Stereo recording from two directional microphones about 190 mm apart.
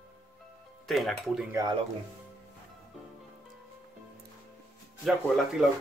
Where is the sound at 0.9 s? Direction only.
Centre (ahead or behind).